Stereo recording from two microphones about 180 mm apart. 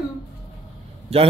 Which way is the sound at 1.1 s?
35° right (ahead or behind).